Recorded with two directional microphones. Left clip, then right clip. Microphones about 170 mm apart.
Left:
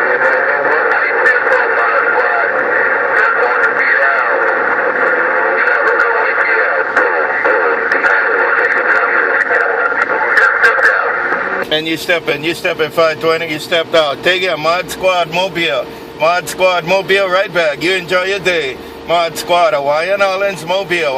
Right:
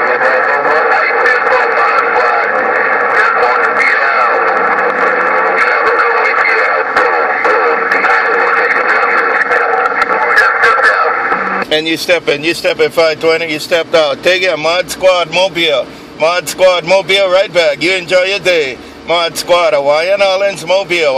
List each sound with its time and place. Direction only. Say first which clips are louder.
0.0 s music: right 1 dB; 50° right (ahead or behind); by 21.1 s 35° right (ahead or behind)